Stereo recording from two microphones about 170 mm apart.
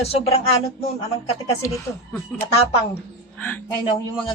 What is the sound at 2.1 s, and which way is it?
Speech, 10° left (ahead or behind).